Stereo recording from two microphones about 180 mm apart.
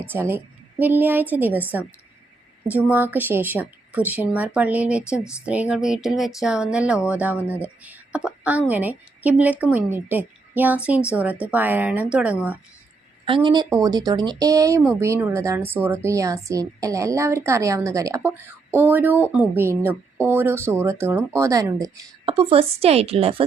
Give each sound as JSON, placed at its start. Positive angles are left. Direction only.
{"t": 0.1, "sound": "a woman's voice", "side_deg": -10}
{"t": 2.6, "sound": "a woman's voice", "side_deg": -10}
{"t": 13.2, "sound": "a woman's voice", "side_deg": -25}
{"t": 22.3, "sound": "a woman's voice", "side_deg": -30}